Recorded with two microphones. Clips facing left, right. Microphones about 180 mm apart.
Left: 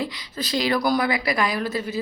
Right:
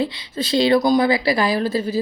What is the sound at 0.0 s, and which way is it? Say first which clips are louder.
Speech: right 6 dB; 25° right (ahead or behind).